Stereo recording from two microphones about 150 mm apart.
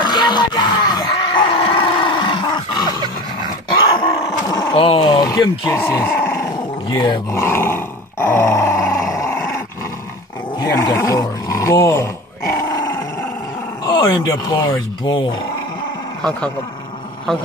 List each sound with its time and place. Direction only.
0.0 s music: 30° left (ahead or behind)
4.5 s a sound: 25° left (ahead or behind)
4.8 s speech: 35° left (ahead or behind)
5.8 s speech: 15° left (ahead or behind)
7.4 s grunt: 15° left (ahead or behind)
9.1 s dog: 20° left (ahead or behind)
10.6 s roar: 25° left (ahead or behind)
13.8 s speech: 30° left (ahead or behind)
16.2 s speech: 5° left (ahead or behind)